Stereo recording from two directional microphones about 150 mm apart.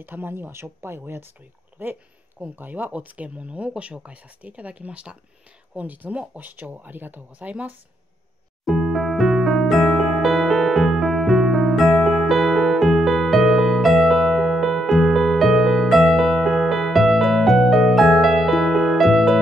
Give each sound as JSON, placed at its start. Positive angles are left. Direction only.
{"t": 0.0, "sound": "speech", "side_deg": -15}
{"t": 8.6, "sound": "electric piano", "side_deg": 0}